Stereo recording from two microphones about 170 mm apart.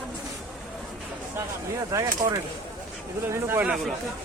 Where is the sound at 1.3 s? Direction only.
20° right (ahead or behind).